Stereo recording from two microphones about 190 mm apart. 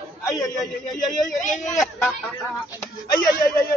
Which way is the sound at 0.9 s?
40° left (ahead or behind).